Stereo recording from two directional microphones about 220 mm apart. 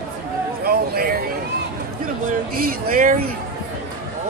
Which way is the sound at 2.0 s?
40° right (ahead or behind).